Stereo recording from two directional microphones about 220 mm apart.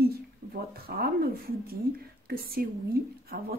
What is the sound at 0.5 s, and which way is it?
A woman's voice, 45° right (ahead or behind).